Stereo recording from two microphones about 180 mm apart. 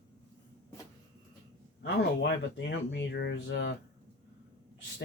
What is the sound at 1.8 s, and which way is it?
Speech, 85° left.